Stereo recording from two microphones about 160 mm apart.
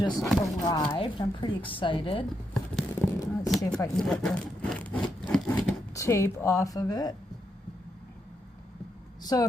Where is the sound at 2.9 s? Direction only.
20° left (ahead or behind).